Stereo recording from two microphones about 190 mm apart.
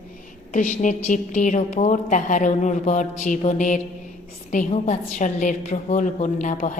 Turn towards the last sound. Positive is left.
turn(degrees=40)  # may be behind; listen again after turning